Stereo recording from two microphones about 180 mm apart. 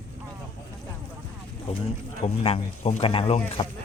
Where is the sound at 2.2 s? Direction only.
35° left (ahead or behind).